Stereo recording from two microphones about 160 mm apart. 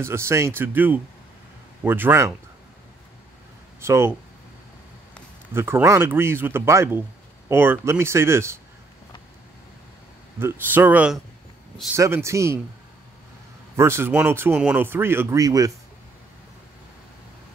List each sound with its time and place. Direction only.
0.0 s speech: 15° right (ahead or behind)
3.8 s speech: 15° right (ahead or behind)
5.5 s speech: 15° right (ahead or behind)
10.4 s speech: 10° right (ahead or behind)
13.7 s speech: 15° right (ahead or behind)